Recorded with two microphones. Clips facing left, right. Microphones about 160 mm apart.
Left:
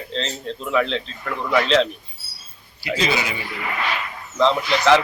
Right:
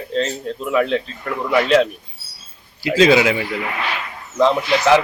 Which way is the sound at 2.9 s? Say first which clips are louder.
Right 10 dB; 90° right.